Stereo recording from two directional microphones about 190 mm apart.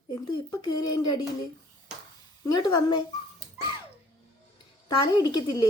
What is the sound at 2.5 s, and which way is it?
Speech, 20° left (ahead or behind).